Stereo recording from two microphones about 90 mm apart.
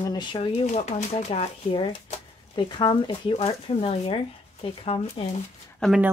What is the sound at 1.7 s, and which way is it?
Speech, 75° left (ahead or behind).